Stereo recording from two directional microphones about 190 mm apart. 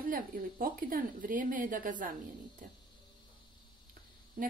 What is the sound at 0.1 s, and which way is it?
Speech, 50° right (ahead or behind).